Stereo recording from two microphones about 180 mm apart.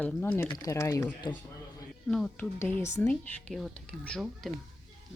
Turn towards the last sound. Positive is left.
turn(degrees=0)  # may be behind; listen again after turning